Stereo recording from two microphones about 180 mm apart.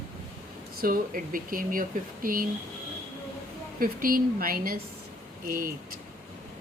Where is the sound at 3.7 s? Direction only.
50° right (ahead or behind).